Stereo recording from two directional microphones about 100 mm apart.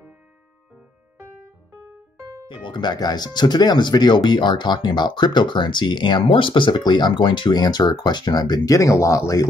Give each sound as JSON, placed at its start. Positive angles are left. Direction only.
{"t": 2.4, "sound": "speech", "side_deg": 55}